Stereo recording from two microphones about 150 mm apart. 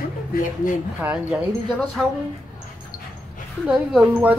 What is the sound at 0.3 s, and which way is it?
Speech, 60° left (ahead or behind).